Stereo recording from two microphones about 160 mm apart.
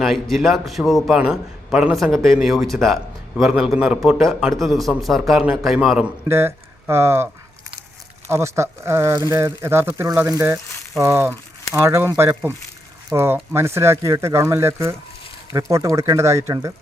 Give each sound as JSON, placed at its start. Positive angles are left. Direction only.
{"t": 0.0, "sound": "a man's voice", "side_deg": 0}
{"t": 6.2, "sound": "speech", "side_deg": -15}
{"t": 8.3, "sound": "speech", "side_deg": -15}